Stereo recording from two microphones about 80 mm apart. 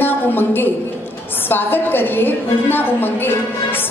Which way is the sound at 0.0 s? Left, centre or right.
Left.